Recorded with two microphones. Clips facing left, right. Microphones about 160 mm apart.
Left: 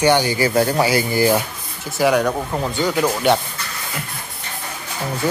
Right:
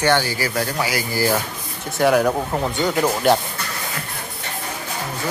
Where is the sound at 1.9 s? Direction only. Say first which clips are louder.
Even; centre (ahead or behind).